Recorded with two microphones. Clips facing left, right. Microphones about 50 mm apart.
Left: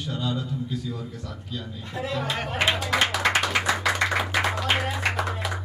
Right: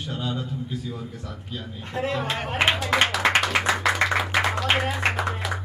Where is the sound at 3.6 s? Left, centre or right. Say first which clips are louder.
Right 2 dB; centre.